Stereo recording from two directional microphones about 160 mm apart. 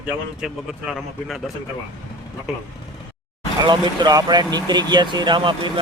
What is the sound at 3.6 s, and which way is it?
Speech, 25° right (ahead or behind).